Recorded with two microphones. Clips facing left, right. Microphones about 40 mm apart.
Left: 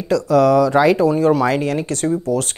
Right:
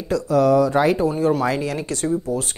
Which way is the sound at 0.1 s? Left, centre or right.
Left.